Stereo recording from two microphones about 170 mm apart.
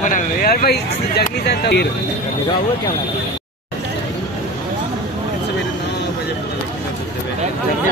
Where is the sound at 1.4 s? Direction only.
80° left.